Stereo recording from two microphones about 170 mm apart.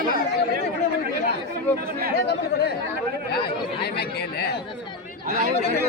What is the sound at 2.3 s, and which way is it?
Speech, 70° left (ahead or behind).